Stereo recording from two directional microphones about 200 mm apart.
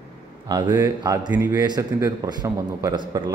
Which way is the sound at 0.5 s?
20° right (ahead or behind).